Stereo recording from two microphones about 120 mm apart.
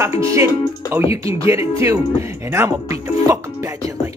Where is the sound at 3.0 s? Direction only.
25° right (ahead or behind).